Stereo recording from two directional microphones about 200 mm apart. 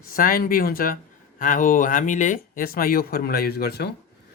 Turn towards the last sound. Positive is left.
turn(degrees=55)  # may be behind; listen again after turning